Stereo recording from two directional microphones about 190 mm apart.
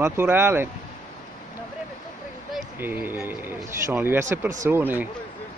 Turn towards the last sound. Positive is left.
turn(degrees=-10)  # may be behind; listen again after turning